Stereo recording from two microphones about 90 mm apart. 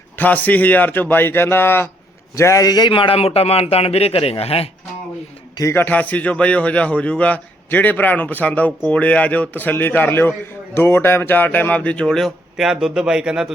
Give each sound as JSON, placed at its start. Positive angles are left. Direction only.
{"t": 0.2, "sound": "a man's voice", "side_deg": 20}
{"t": 2.9, "sound": "a man's voice", "side_deg": 85}
{"t": 5.7, "sound": "a man's voice", "side_deg": 20}